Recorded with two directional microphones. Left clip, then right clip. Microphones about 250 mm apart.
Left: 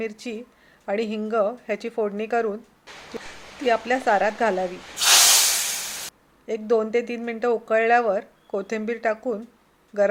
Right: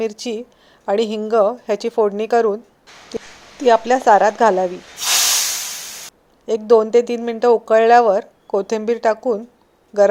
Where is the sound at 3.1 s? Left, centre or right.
Right.